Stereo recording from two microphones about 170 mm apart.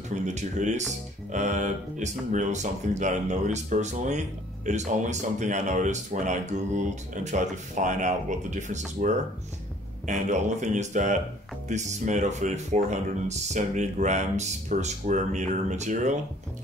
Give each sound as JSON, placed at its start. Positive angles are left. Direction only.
{"t": 0.1, "sound": "speech", "side_deg": -45}